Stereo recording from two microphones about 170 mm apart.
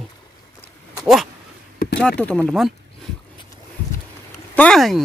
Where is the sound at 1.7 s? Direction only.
65° left (ahead or behind).